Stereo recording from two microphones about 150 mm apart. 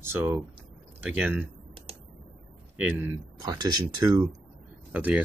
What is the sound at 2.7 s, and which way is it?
Speech, 15° right (ahead or behind).